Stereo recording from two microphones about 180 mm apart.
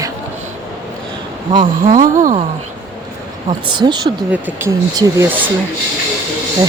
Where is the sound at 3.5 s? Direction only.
25° right (ahead or behind); by 5.5 s 10° right (ahead or behind).